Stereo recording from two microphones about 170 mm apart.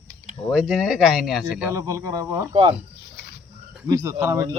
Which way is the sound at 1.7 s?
20° right (ahead or behind).